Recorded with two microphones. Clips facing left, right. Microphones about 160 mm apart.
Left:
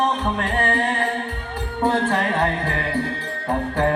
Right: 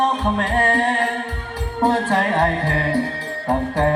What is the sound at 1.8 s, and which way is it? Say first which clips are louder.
Music: right 2 dB; 35° right (ahead or behind).